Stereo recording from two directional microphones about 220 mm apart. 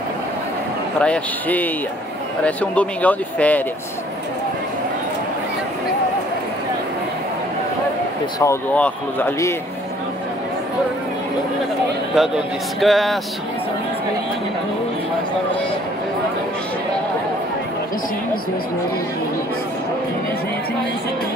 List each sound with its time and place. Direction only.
0.9 s speech: 5° left (ahead or behind)
8.4 s speech: 10° left (ahead or behind)
12.2 s speech: centre (ahead or behind)